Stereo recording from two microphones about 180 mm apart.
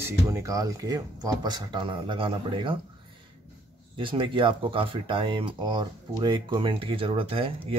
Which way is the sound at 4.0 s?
30° right (ahead or behind).